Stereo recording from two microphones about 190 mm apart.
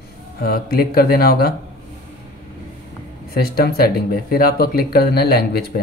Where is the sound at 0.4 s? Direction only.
50° left (ahead or behind).